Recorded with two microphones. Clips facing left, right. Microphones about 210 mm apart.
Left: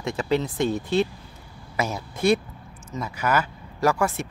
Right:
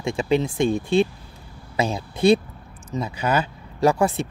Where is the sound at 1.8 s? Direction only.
30° right (ahead or behind).